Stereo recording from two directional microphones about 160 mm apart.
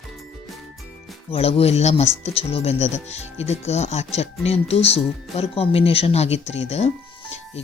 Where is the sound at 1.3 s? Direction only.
40° left (ahead or behind).